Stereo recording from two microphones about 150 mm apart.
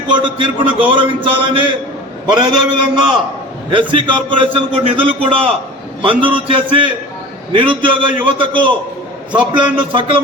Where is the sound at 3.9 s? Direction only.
35° right (ahead or behind).